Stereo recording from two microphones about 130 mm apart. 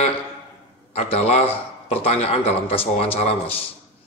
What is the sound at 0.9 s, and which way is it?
A man's voice, 50° left (ahead or behind).